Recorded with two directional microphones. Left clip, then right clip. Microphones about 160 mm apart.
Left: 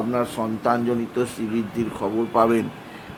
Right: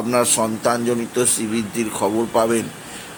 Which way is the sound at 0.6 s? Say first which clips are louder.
Right 2 dB; 15° right (ahead or behind).